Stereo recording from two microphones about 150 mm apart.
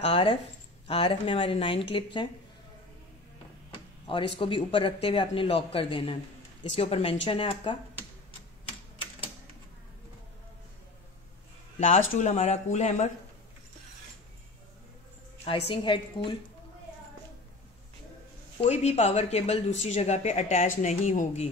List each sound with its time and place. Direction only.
0.0 s speech: 40° left (ahead or behind)
3.7 s speech: 35° left (ahead or behind)
11.8 s speech: 50° left (ahead or behind)
15.3 s a sound: 40° left (ahead or behind)
15.7 s speech: 35° left (ahead or behind)
18.6 s speech: 45° left (ahead or behind)